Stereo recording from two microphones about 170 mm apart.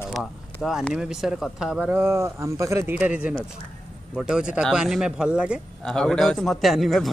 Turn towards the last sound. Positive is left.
turn(degrees=0)  # may be behind; listen again after turning